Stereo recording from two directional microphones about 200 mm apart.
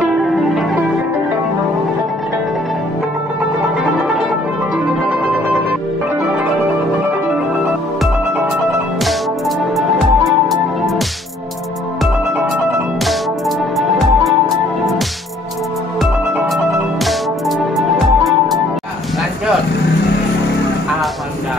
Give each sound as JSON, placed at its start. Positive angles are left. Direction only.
{"t": 0.0, "sound": "music", "side_deg": 0}
{"t": 9.8, "sound": "music", "side_deg": 0}
{"t": 13.0, "sound": "music", "side_deg": 0}
{"t": 16.0, "sound": "music", "side_deg": 0}